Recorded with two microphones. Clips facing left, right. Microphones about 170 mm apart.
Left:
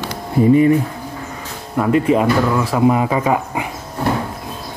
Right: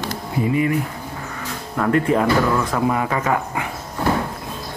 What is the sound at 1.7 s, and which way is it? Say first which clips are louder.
Speech: left 3 dB; 15° left (ahead or behind).